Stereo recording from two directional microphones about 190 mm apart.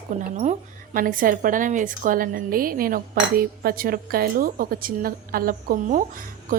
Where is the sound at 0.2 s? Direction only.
40° right (ahead or behind).